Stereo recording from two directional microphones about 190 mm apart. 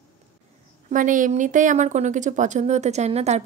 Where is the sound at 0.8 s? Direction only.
45° right (ahead or behind).